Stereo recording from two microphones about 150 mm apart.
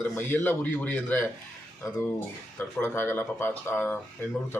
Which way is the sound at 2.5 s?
15° left (ahead or behind).